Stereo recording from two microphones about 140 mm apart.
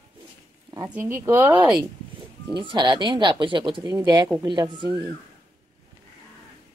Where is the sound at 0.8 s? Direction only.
15° right (ahead or behind).